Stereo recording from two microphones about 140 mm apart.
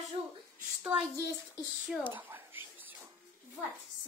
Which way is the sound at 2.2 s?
15° right (ahead or behind).